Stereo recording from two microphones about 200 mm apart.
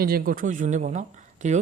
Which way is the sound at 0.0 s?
45° right (ahead or behind).